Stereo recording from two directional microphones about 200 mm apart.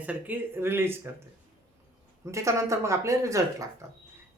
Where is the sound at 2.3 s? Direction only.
15° right (ahead or behind).